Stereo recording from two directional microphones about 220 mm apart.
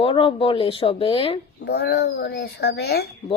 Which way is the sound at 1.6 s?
45° left (ahead or behind).